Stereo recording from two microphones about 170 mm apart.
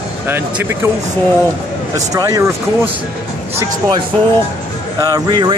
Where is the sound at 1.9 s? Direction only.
20° right (ahead or behind).